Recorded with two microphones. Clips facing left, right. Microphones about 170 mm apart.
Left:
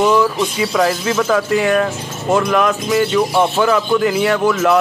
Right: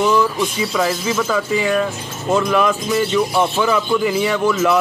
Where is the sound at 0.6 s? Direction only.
Centre (ahead or behind).